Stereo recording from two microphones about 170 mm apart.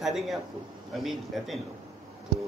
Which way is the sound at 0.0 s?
Centre (ahead or behind).